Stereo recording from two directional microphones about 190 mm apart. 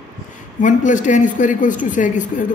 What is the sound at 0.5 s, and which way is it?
A man's voice, 40° left (ahead or behind).